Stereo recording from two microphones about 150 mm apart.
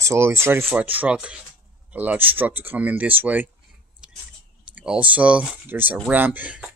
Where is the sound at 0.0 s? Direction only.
20° right (ahead or behind).